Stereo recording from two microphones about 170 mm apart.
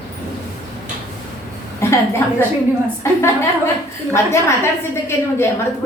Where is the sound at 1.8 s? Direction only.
15° left (ahead or behind).